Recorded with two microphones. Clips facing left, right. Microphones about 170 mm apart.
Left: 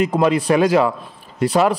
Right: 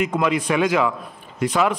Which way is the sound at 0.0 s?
35° left (ahead or behind).